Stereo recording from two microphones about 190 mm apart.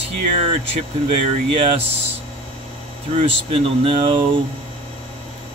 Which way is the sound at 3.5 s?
30° right (ahead or behind).